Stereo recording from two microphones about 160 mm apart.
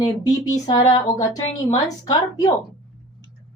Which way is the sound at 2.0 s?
25° left (ahead or behind).